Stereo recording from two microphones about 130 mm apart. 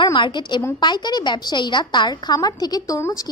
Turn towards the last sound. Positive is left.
turn(degrees=25)  # may be behind; listen again after turning